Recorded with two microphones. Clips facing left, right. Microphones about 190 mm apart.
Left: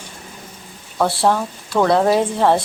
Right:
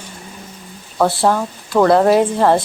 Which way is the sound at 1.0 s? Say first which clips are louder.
Right 2 dB; centre (ahead or behind).